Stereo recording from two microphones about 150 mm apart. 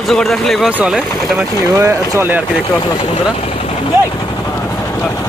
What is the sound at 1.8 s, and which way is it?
Speech, 15° right (ahead or behind).